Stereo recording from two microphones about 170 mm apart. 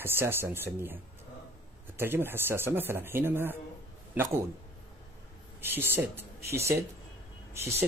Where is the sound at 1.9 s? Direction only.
15° right (ahead or behind).